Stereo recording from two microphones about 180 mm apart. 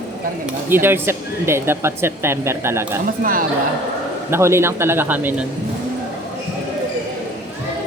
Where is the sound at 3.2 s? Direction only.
50° right (ahead or behind).